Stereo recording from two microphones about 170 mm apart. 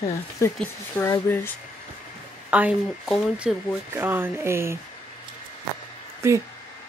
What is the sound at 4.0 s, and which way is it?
Speech, 15° right (ahead or behind).